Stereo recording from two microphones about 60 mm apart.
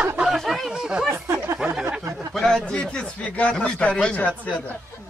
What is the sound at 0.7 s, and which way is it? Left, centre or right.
Speech, centre.